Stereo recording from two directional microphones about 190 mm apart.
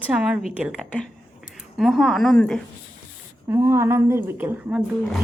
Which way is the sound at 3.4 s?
15° right (ahead or behind).